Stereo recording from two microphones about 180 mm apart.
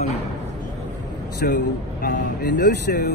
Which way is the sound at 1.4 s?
60° left (ahead or behind).